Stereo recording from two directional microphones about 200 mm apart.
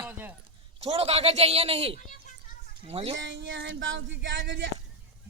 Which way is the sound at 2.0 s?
40° left (ahead or behind).